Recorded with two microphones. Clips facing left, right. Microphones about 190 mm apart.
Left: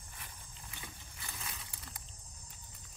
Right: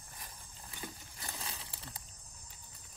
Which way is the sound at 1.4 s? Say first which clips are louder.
Right 2 dB; 30° right (ahead or behind).